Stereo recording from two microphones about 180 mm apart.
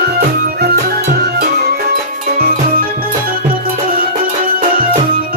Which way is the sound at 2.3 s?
55° right (ahead or behind).